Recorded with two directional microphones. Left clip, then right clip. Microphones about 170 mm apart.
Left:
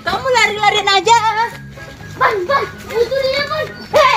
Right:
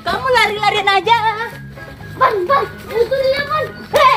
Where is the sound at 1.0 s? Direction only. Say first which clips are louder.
Left 2 dB; 75° left (ahead or behind).